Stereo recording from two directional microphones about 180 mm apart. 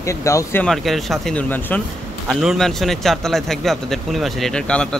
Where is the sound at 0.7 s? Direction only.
Centre (ahead or behind).